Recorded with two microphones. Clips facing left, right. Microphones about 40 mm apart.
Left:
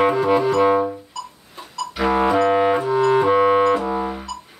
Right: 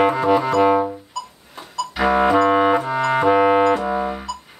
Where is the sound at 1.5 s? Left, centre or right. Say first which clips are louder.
Right 2 dB; centre.